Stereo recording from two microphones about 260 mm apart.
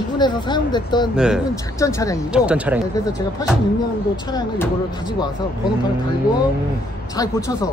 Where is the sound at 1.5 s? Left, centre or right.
Centre.